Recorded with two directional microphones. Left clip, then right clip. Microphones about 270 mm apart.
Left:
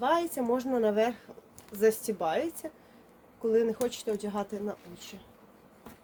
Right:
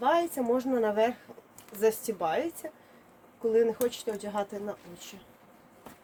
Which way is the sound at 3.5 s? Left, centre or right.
Centre.